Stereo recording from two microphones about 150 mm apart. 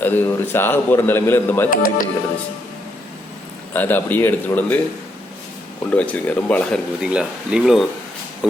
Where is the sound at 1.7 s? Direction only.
65° left (ahead or behind).